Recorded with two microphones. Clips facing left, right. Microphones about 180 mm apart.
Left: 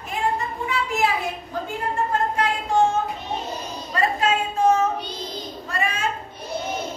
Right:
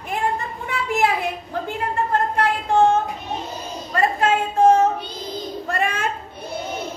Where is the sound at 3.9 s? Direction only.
50° right (ahead or behind).